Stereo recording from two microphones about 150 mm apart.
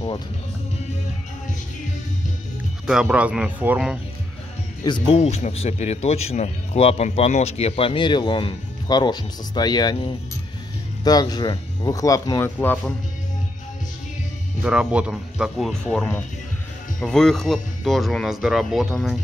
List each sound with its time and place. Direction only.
2.9 s speech: 5° right (ahead or behind)
4.8 s speech: 35° left (ahead or behind); by 12.9 s 10° left (ahead or behind)
14.6 s speech: 5° right (ahead or behind)